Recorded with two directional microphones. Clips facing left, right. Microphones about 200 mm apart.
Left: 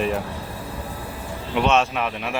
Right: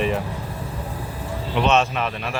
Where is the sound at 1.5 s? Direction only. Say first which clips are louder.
Even; 5° left (ahead or behind).